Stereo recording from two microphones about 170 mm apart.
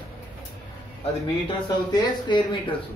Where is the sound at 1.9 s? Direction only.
25° left (ahead or behind).